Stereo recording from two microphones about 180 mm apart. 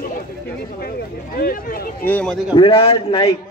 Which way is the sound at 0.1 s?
60° left (ahead or behind).